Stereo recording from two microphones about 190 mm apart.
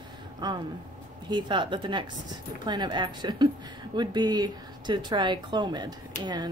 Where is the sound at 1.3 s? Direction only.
25° right (ahead or behind).